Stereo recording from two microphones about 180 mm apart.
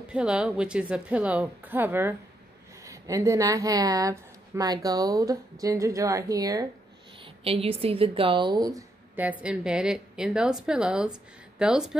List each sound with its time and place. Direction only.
0.1 s a woman's voice: 5° right (ahead or behind)
7.4 s a woman's voice: 30° right (ahead or behind)
9.1 s a woman's voice: 10° right (ahead or behind)